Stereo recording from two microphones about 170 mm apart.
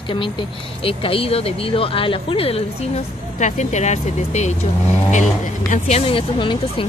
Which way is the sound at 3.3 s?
45° left (ahead or behind).